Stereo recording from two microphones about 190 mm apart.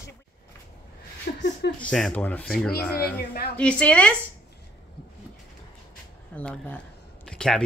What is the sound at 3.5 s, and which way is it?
Speech, 5° left (ahead or behind).